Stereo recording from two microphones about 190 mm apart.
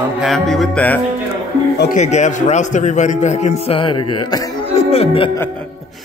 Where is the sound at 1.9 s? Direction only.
40° left (ahead or behind).